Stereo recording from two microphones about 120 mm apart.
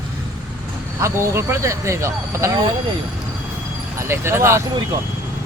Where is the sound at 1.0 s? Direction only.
20° right (ahead or behind).